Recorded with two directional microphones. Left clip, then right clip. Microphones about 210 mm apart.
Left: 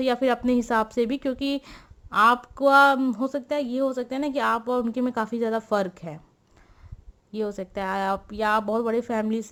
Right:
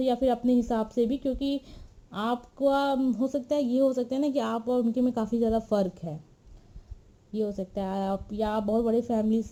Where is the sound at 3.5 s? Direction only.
5° left (ahead or behind).